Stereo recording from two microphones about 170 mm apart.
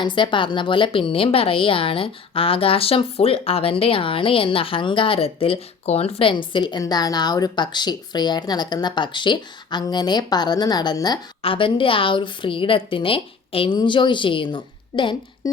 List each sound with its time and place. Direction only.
0.0 s a woman's voice: 30° left (ahead or behind)